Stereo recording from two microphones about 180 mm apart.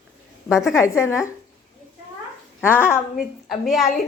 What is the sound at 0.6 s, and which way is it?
Speech, 15° left (ahead or behind).